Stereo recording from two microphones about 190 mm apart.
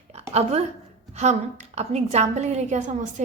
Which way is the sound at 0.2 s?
35° right (ahead or behind).